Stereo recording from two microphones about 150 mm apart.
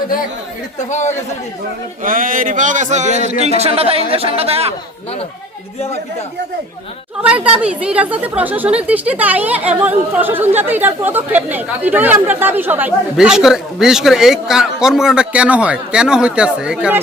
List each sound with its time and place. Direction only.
0.9 s speech: 50° left (ahead or behind)
2.0 s speech: 65° right (ahead or behind); by 4.7 s 40° right (ahead or behind)
7.2 s a woman's voice: 10° right (ahead or behind)